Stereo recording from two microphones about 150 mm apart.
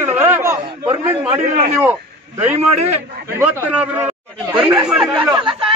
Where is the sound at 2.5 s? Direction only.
45° right (ahead or behind).